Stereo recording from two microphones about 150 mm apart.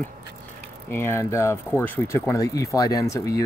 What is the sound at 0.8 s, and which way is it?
Speech, 15° left (ahead or behind).